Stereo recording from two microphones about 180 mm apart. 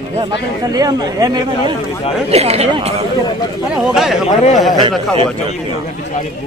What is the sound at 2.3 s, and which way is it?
Speech, 35° right (ahead or behind).